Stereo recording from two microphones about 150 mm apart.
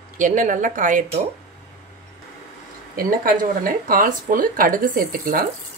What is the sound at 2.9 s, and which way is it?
Speech, 70° right (ahead or behind).